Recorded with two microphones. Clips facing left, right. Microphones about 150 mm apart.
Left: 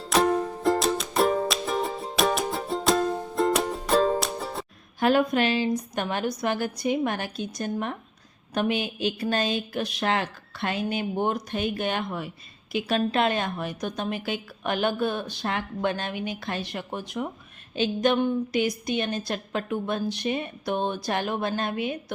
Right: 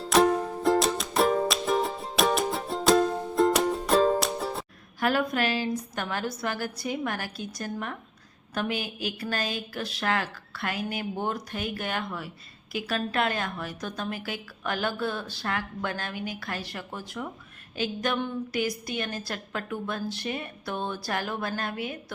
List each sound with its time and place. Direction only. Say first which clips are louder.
0.0 s music: right 1 dB; centre (ahead or behind)
4.9 s a woman's voice: left 4 dB; 20° left (ahead or behind)